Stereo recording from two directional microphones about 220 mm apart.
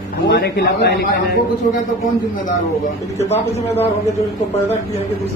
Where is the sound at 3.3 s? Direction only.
30° left (ahead or behind).